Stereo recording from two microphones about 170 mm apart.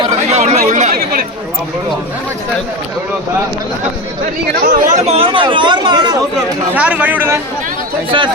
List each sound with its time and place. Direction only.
0.0 s chatter: 40° right (ahead or behind)
4.6 s speech: 50° right (ahead or behind); by 6.1 s 25° right (ahead or behind)
6.7 s speech: 10° right (ahead or behind)